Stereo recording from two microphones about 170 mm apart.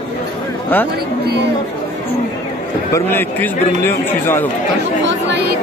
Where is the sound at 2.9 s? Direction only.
10° left (ahead or behind).